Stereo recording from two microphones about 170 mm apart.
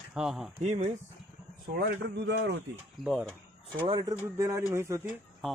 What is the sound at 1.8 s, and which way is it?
Speech, 75° right (ahead or behind).